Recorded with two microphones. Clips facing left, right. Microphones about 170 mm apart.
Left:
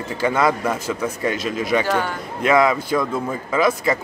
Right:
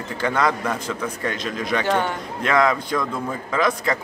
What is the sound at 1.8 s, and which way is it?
Speech, 25° right (ahead or behind).